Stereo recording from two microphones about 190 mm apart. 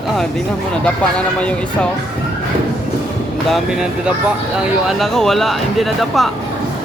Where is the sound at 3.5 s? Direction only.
5° right (ahead or behind).